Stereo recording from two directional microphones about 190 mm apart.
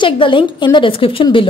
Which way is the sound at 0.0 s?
25° left (ahead or behind).